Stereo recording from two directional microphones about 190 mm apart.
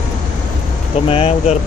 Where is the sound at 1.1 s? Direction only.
30° left (ahead or behind).